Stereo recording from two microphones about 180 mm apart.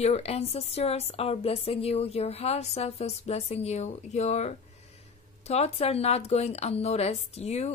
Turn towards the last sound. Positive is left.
turn(degrees=35)  # may be behind; listen again after turning